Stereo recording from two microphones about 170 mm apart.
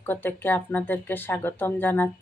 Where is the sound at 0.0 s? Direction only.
10° left (ahead or behind).